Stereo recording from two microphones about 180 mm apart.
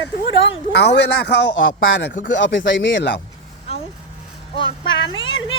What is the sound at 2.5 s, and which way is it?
Speech, 90° left.